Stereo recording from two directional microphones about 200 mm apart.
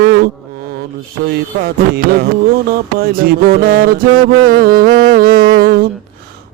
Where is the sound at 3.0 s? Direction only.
50° right (ahead or behind).